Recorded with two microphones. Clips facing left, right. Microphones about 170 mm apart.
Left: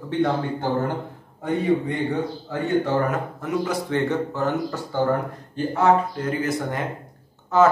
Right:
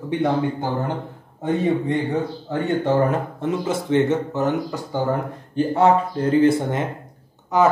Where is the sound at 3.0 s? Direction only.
25° right (ahead or behind).